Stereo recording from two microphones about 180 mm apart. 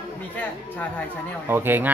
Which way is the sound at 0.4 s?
10° left (ahead or behind).